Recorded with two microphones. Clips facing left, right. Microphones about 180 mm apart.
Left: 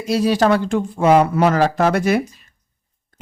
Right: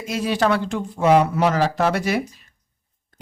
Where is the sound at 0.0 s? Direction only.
35° left (ahead or behind).